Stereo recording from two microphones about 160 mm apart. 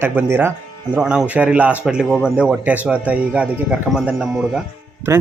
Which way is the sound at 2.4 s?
10° right (ahead or behind).